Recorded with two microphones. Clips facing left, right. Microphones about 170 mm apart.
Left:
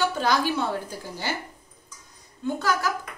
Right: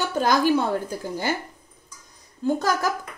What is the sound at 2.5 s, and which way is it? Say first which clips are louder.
Speech: right 1 dB; 40° right (ahead or behind).